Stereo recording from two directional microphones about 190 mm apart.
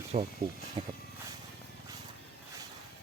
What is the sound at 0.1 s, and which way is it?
Speech, 40° right (ahead or behind).